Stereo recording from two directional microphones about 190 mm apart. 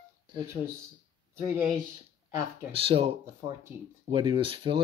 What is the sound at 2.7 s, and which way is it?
Speech, 30° right (ahead or behind).